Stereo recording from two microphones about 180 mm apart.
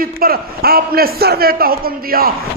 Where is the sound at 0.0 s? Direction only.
55° right (ahead or behind).